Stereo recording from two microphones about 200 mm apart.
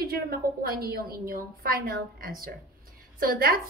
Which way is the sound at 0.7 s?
50° right (ahead or behind).